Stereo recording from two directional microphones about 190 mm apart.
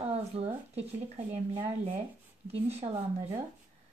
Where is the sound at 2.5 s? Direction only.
35° right (ahead or behind).